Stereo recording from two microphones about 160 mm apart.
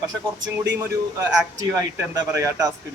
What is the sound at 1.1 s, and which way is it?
A man's voice, 20° right (ahead or behind).